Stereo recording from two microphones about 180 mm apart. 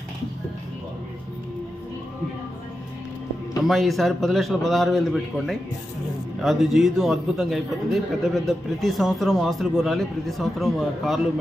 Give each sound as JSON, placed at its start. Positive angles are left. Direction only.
{"t": 3.6, "sound": "a man's voice", "side_deg": 0}